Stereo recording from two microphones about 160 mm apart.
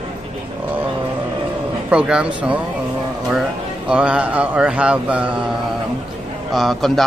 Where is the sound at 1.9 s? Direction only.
5° right (ahead or behind).